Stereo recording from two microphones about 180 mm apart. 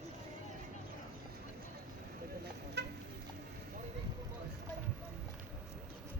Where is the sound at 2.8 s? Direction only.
70° right (ahead or behind).